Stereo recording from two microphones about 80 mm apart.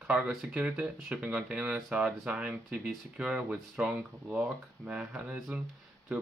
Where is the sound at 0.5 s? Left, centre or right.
Centre.